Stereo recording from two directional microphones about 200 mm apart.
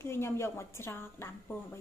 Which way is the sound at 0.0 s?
15° left (ahead or behind).